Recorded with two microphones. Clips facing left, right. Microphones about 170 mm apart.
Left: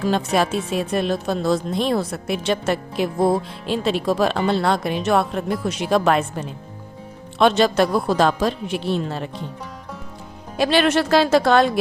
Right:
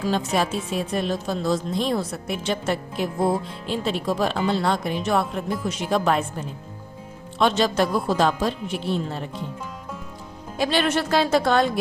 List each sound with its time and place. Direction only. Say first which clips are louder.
0.0 s a woman's voice: left 3 dB; 65° left (ahead or behind)
7.3 s a woman's voice: left 4 dB; 65° left (ahead or behind); by 9.3 s 85° left
10.6 s a woman's voice: left 4 dB; 75° left (ahead or behind)